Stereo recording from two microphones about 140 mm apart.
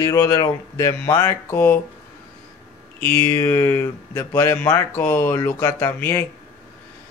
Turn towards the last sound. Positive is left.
turn(degrees=15)  # may be behind; listen again after turning